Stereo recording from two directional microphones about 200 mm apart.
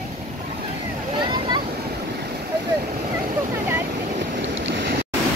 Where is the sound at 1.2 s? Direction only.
20° right (ahead or behind).